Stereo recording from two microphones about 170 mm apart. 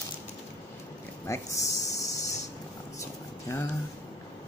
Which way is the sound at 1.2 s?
20° left (ahead or behind).